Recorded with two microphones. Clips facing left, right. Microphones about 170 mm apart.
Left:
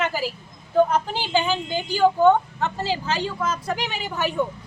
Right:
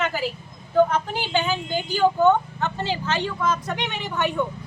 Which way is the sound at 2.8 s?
35° left (ahead or behind).